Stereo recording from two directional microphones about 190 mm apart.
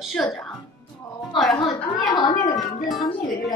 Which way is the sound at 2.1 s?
20° left (ahead or behind).